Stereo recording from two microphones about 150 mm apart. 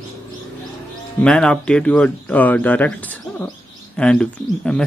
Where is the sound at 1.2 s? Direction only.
5° left (ahead or behind).